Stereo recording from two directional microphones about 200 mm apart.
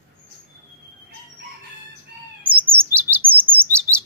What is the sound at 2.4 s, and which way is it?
Chirp, 10° right (ahead or behind).